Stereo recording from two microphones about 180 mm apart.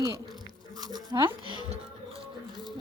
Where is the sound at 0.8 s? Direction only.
20° right (ahead or behind).